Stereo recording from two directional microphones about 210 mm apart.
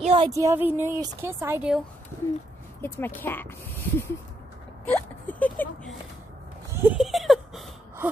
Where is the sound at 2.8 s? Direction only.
10° left (ahead or behind).